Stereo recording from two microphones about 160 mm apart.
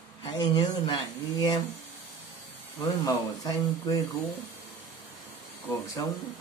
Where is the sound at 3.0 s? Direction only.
20° left (ahead or behind).